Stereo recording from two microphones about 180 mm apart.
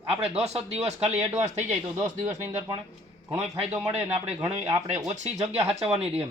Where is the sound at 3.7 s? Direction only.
20° right (ahead or behind).